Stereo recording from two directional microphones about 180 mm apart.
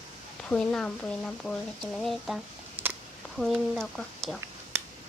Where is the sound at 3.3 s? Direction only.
Centre (ahead or behind).